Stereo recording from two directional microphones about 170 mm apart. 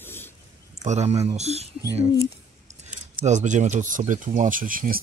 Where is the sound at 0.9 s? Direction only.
40° right (ahead or behind).